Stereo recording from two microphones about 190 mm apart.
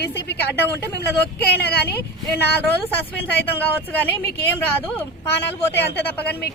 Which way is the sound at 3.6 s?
10° left (ahead or behind).